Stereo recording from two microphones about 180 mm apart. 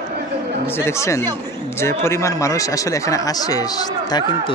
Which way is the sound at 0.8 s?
15° left (ahead or behind).